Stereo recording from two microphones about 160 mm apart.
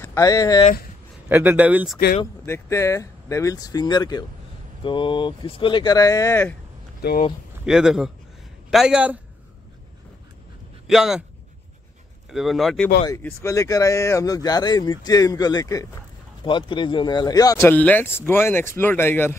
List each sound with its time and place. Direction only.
0.0 s speech: 20° left (ahead or behind)
1.3 s speech: 10° right (ahead or behind)
2.4 s speech: 15° left (ahead or behind)
7.0 s speech: 75° left (ahead or behind)
7.6 s a man's voice: 5° right (ahead or behind)
10.9 s speech: centre (ahead or behind)
12.3 s speech: centre (ahead or behind)
13.2 s speech: 20° left (ahead or behind)
16.4 s speech: 30° left (ahead or behind)
17.6 s speech: 10° left (ahead or behind)